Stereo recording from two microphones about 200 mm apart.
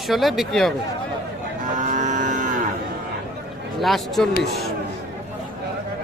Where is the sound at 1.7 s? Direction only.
40° right (ahead or behind).